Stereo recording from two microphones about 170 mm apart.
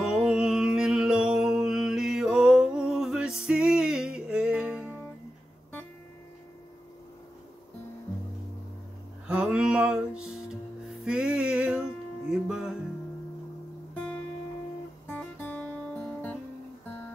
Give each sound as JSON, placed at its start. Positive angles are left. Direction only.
{"t": 0.0, "sound": "music", "side_deg": -5}
{"t": 9.3, "sound": "music", "side_deg": -5}
{"t": 13.9, "sound": "music", "side_deg": 5}